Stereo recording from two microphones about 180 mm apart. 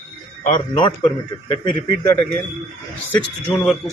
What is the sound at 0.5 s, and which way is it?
A man's voice, 25° left (ahead or behind).